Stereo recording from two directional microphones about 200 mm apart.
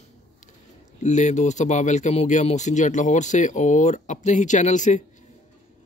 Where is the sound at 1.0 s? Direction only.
35° left (ahead or behind).